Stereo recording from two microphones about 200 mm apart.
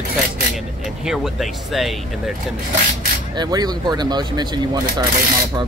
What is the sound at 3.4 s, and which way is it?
Speech, 20° right (ahead or behind).